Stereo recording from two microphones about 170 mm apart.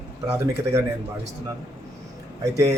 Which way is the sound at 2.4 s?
20° right (ahead or behind).